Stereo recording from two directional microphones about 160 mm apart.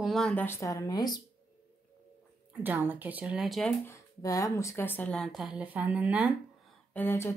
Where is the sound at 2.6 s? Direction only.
10° right (ahead or behind).